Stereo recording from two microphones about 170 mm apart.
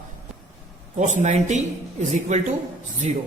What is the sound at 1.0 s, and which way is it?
A man's voice, 45° right (ahead or behind).